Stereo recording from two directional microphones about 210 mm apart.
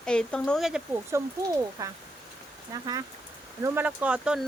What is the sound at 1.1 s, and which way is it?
Speech, 15° right (ahead or behind).